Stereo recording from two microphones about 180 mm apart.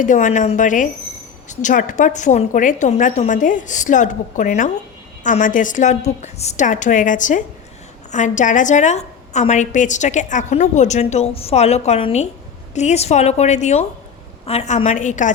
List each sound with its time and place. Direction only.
0.0 s a woman's voice: 45° left (ahead or behind)